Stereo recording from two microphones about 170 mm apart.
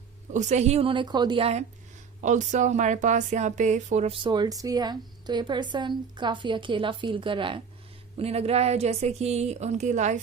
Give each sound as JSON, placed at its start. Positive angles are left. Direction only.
{"t": 0.3, "sound": "speech", "side_deg": -45}
{"t": 2.2, "sound": "a woman's voice", "side_deg": -45}